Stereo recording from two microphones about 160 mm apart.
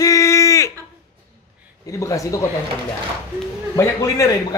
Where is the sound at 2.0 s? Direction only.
20° left (ahead or behind).